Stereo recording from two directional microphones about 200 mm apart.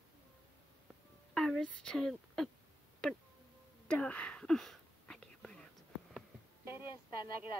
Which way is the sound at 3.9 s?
5° left (ahead or behind).